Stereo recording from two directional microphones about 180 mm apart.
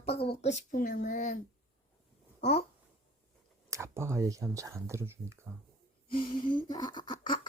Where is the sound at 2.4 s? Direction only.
35° left (ahead or behind).